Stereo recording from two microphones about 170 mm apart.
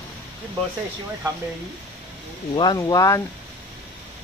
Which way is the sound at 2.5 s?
25° left (ahead or behind).